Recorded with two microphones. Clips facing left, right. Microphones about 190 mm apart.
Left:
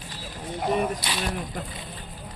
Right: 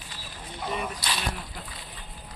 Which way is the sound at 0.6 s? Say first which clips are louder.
Left 7 dB; 45° left (ahead or behind).